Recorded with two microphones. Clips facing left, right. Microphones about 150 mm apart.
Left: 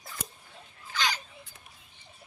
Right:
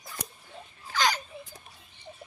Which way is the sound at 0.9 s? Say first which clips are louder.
Right 5 dB; 45° right (ahead or behind).